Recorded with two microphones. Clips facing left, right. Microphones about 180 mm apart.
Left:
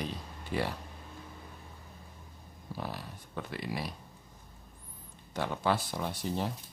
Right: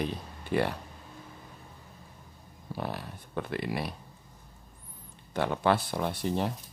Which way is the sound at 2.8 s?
60° right (ahead or behind).